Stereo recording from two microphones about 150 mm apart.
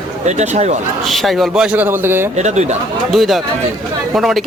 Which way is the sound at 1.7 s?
15° right (ahead or behind).